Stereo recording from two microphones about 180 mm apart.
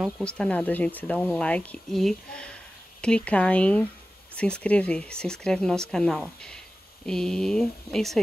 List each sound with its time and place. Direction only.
0.2 s speech: 5° left (ahead or behind)